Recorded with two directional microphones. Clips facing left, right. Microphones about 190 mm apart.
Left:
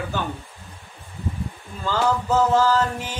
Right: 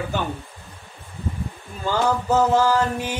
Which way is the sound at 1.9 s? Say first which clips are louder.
Right 1 dB; 15° right (ahead or behind).